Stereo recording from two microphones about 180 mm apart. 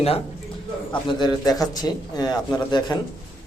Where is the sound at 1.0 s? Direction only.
20° left (ahead or behind).